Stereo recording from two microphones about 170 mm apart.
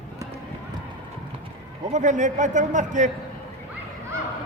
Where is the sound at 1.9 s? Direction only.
45° right (ahead or behind).